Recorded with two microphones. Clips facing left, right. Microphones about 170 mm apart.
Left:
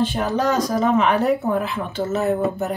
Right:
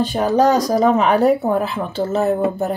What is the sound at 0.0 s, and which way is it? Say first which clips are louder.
Speech: right 5 dB; 40° right (ahead or behind).